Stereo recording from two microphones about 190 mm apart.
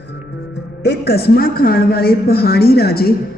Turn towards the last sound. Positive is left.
turn(degrees=55)  # may be behind; listen again after turning